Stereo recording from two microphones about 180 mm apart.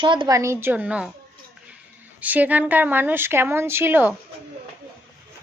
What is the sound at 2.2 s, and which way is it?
Speech, 10° right (ahead or behind).